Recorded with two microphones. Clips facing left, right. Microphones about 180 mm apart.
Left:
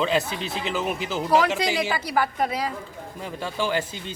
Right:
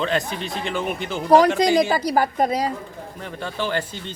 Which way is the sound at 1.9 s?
40° right (ahead or behind).